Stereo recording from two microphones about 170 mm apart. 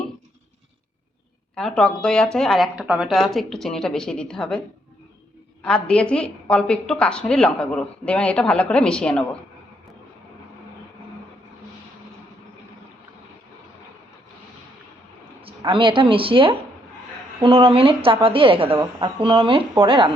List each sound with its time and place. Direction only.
1.5 s a woman's voice: 5° left (ahead or behind)
5.6 s a woman's voice: 5° left (ahead or behind)
15.4 s a woman's voice: 30° right (ahead or behind)